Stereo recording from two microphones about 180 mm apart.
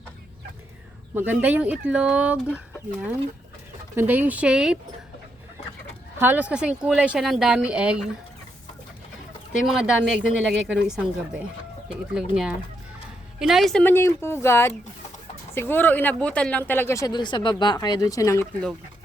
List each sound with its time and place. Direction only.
1.1 s speech: 10° right (ahead or behind)
3.9 s speech: 10° right (ahead or behind)
6.1 s a woman's voice: 10° right (ahead or behind)
9.6 s a woman's voice: 5° right (ahead or behind); by 18.4 s 20° left (ahead or behind)